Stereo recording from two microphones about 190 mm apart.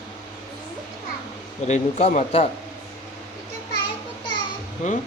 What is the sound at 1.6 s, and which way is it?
Speech, 35° left (ahead or behind).